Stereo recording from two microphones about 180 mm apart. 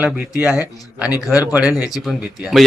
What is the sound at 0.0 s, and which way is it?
A man's voice, 5° right (ahead or behind).